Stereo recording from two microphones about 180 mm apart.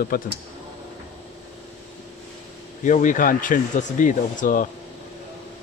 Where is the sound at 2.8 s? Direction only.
45° left (ahead or behind).